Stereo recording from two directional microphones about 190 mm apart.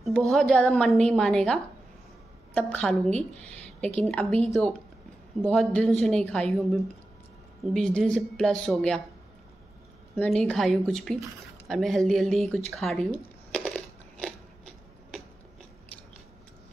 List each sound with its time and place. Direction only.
0.3 s a woman's voice: 5° left (ahead or behind)
5.4 s a woman's voice: 5° left (ahead or behind)
10.1 s a woman's voice: 5° left (ahead or behind)
13.1 s a sound: 5° left (ahead or behind)